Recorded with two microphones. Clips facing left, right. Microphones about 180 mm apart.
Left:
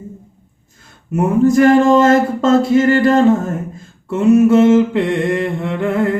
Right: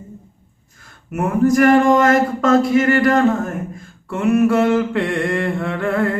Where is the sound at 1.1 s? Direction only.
25° left (ahead or behind).